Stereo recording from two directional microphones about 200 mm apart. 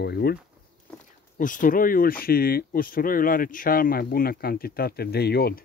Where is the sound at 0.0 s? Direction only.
55° left (ahead or behind).